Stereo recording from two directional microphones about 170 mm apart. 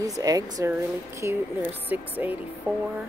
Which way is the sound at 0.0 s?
20° right (ahead or behind).